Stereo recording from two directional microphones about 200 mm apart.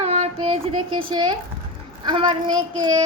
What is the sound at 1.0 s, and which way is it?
A child's voice, 25° right (ahead or behind).